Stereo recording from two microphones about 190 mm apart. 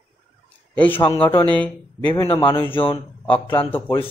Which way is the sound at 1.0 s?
25° left (ahead or behind).